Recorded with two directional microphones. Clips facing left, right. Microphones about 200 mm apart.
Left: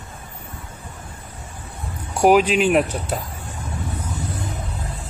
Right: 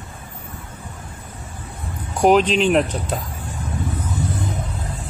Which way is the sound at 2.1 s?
10° left (ahead or behind).